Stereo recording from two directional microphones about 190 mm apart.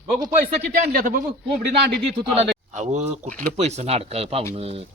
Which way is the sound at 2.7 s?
40° right (ahead or behind).